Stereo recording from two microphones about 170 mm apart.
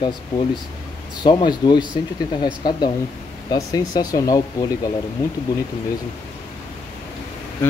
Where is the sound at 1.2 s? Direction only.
25° left (ahead or behind).